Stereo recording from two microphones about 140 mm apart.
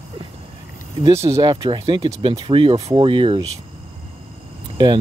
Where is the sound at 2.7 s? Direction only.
25° right (ahead or behind).